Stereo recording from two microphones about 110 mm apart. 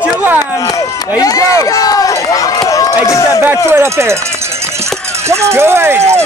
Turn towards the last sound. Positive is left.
turn(degrees=-25)  # may be behind; listen again after turning